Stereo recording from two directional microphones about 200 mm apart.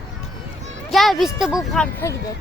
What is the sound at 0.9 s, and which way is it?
Speech, centre (ahead or behind).